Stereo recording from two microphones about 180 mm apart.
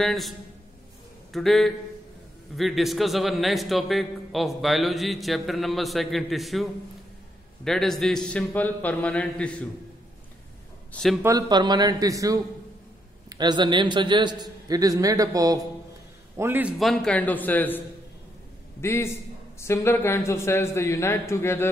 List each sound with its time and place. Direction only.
0.0 s a man's voice: centre (ahead or behind)
10.9 s a man's voice: 5° left (ahead or behind)
11.2 s a man's voice: 20° right (ahead or behind)
16.7 s speech: centre (ahead or behind)